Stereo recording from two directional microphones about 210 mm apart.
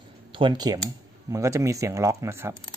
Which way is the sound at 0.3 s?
25° right (ahead or behind).